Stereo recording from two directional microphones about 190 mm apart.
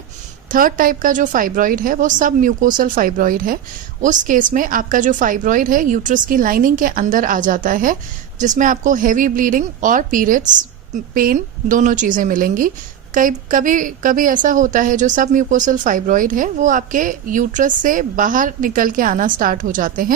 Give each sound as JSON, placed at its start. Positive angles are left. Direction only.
{"t": 0.4, "sound": "a woman's voice", "side_deg": -45}